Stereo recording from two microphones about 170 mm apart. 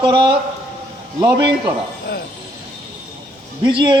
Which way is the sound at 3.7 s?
25° right (ahead or behind).